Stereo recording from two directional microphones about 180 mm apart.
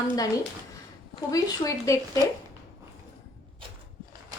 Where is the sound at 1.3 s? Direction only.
20° left (ahead or behind).